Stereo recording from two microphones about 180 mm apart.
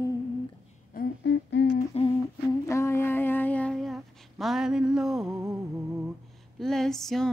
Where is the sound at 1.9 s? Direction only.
35° left (ahead or behind).